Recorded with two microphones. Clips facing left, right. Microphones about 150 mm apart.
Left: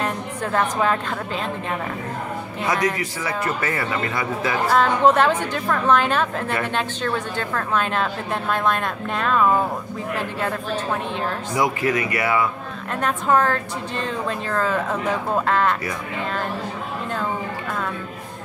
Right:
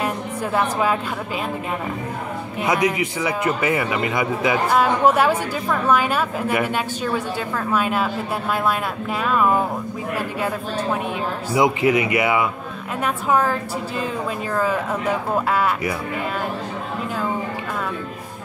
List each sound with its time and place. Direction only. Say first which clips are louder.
0.0 s a sound: right 1 dB; 10° right (ahead or behind)
2.6 s a man's voice: right 3 dB; 20° right (ahead or behind)
11.5 s speech: right 5 dB; 20° right (ahead or behind)
13.0 s a man's voice: even; 10° right (ahead or behind)